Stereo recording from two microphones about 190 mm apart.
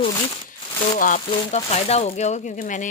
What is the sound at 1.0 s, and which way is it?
Speech, 40° left (ahead or behind).